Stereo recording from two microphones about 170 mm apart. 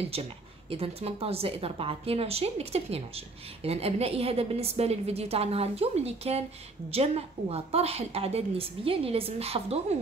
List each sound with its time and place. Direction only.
0.0 s speech: 35° right (ahead or behind)